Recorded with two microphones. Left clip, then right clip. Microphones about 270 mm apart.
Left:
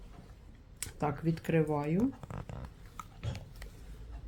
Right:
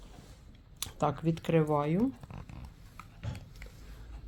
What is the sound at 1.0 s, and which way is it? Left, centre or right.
Speech, right.